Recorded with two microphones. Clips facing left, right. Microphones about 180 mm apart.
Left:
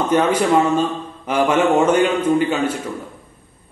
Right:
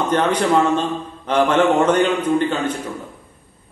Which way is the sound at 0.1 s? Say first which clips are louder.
Left 2 dB; 10° left (ahead or behind).